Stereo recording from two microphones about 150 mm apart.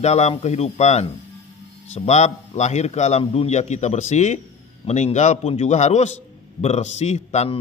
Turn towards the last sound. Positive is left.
turn(degrees=45)  # may be behind; listen again after turning